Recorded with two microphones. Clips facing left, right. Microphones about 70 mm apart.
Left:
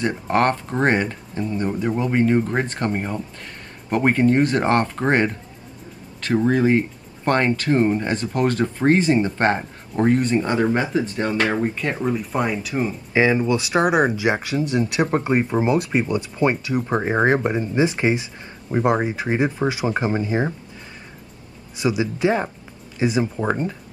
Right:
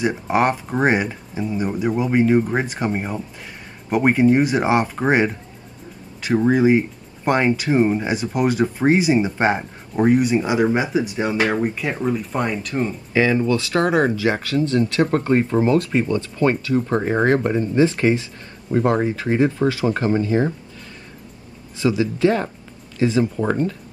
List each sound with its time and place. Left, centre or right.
0.0 s speech: centre
13.1 s speech: centre
21.7 s speech: centre